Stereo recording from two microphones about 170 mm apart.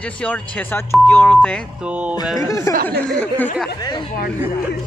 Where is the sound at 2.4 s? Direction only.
20° left (ahead or behind).